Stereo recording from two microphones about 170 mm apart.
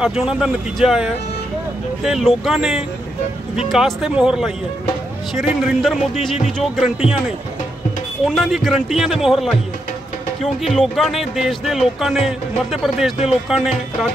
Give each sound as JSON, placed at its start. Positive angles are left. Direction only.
{"t": 0.0, "sound": "speech", "side_deg": -5}
{"t": 8.3, "sound": "speech", "side_deg": 0}